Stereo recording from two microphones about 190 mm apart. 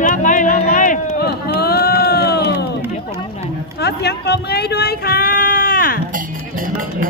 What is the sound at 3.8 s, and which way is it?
Speech, 60° left (ahead or behind).